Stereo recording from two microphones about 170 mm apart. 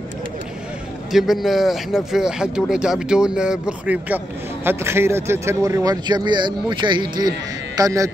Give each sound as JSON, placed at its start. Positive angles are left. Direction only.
{"t": 1.1, "sound": "a man's voice", "side_deg": 0}